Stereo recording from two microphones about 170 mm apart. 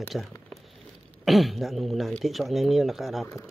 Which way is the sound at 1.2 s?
Centre (ahead or behind).